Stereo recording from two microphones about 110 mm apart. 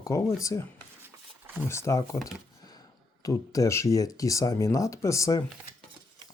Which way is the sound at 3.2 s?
30° left (ahead or behind).